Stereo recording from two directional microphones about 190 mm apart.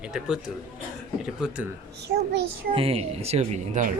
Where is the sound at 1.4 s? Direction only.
5° right (ahead or behind).